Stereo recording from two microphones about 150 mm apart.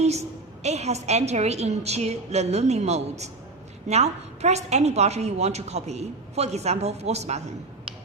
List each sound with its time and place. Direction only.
0.0 s a woman's voice: 45° right (ahead or behind)